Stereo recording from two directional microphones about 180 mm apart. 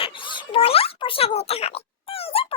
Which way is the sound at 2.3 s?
30° left (ahead or behind).